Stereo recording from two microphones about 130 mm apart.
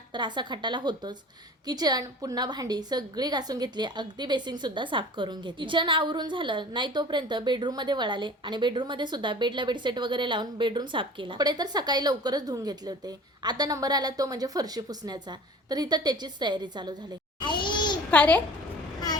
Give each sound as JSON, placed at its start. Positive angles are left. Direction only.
{"t": 0.1, "sound": "a woman's voice", "side_deg": -35}
{"t": 17.4, "sound": "a sound", "side_deg": 35}
{"t": 18.1, "sound": "a child's voice", "side_deg": 10}